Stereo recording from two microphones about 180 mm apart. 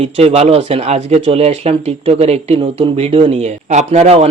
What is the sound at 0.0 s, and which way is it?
Speech, 35° right (ahead or behind).